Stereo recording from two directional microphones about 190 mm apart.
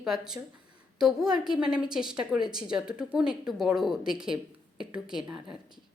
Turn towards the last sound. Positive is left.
turn(degrees=-5)  # may be behind; listen again after turning